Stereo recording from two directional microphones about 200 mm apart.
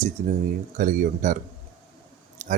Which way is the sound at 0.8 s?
40° right (ahead or behind).